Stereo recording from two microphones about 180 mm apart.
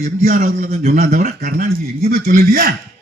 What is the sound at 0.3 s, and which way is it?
Speech, 55° right (ahead or behind).